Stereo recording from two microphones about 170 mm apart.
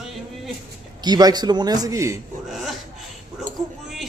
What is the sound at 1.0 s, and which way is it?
A man's voice, 25° right (ahead or behind).